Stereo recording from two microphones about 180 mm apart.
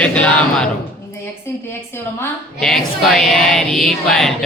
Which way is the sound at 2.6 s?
Centre (ahead or behind).